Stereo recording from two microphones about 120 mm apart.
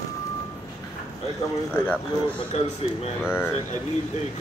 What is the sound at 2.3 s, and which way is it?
Speech, 60° left (ahead or behind).